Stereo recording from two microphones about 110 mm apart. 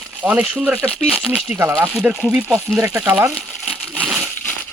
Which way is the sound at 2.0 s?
10° right (ahead or behind).